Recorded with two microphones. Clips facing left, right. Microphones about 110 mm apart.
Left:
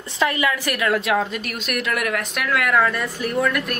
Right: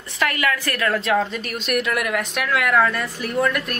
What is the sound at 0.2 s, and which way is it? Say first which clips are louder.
Speech: left 1 dB; 20° left (ahead or behind).